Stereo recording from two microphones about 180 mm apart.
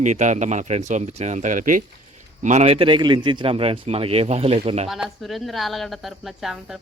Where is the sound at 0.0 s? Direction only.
40° right (ahead or behind).